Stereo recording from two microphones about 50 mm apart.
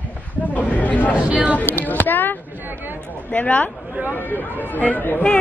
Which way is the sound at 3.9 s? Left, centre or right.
Right.